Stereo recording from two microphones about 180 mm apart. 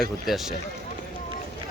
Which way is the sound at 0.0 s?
Centre (ahead or behind).